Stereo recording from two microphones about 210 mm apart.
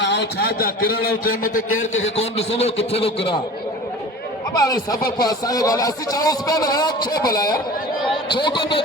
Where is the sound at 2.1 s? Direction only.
30° left (ahead or behind).